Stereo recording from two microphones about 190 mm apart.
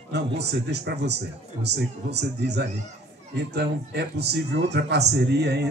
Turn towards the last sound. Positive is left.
turn(degrees=-60)  # may be behind; listen again after turning